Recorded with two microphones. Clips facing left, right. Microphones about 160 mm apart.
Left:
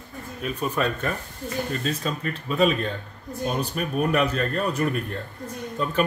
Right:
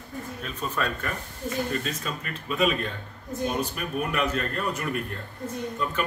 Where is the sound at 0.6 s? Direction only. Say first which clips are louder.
Left 4 dB; 20° left (ahead or behind).